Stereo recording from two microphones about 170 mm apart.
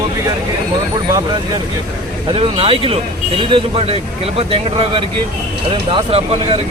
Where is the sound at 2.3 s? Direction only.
30° right (ahead or behind).